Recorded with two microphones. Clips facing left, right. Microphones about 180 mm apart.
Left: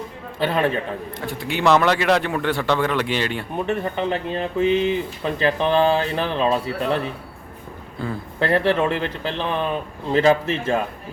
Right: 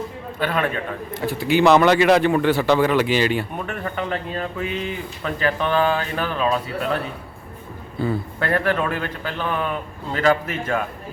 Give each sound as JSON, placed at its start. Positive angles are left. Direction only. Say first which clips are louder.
{"t": 0.3, "sound": "a man's voice", "louder": "left 2 dB", "side_deg": 25}
{"t": 1.1, "sound": "a man's voice", "louder": "right 11 dB", "side_deg": -5}
{"t": 3.7, "sound": "a man's voice", "louder": "left 7 dB", "side_deg": 20}
{"t": 8.0, "sound": "a man's voice", "louder": "right 5 dB", "side_deg": 0}
{"t": 8.4, "sound": "a man's voice", "louder": "left 4 dB", "side_deg": 25}